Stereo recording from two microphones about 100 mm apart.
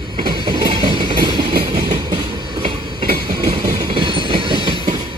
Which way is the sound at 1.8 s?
45° right (ahead or behind).